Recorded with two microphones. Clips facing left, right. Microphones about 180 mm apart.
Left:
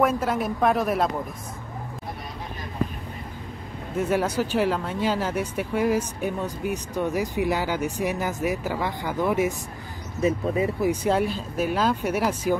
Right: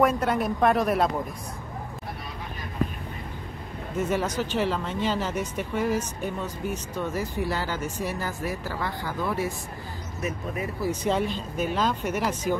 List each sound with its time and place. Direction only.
0.0 s speech: centre (ahead or behind)
4.0 s speech: 10° left (ahead or behind)
10.9 s speech: 10° left (ahead or behind)